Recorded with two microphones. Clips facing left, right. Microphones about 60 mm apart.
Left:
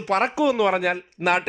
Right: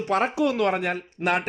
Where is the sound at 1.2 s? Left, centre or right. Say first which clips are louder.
Left 2 dB; left.